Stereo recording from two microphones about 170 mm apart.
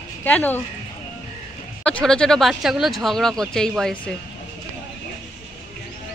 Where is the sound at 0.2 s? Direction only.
10° left (ahead or behind).